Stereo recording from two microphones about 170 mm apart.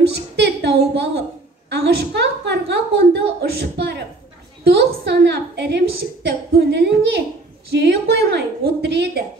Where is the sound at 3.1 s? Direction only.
75° right (ahead or behind).